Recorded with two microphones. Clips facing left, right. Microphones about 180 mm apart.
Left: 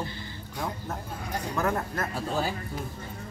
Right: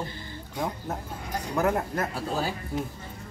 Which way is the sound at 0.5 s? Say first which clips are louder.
Right 3 dB; 20° right (ahead or behind).